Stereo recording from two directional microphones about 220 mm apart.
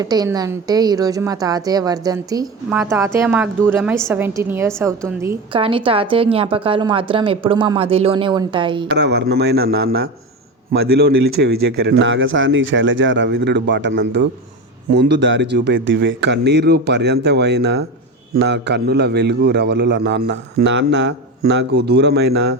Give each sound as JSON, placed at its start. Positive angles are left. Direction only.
{"t": 0.0, "sound": "a woman's voice", "side_deg": -15}
{"t": 5.5, "sound": "a woman's voice", "side_deg": -25}
{"t": 8.9, "sound": "a man's voice", "side_deg": -50}